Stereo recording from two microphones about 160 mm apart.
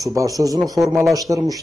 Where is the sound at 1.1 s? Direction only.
20° right (ahead or behind).